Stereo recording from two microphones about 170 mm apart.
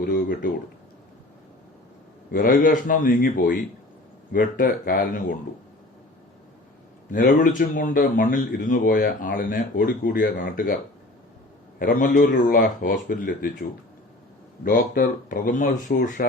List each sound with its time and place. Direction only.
2.3 s speech: 55° left (ahead or behind)
7.1 s speech: 55° left (ahead or behind)
11.8 s speech: 55° left (ahead or behind)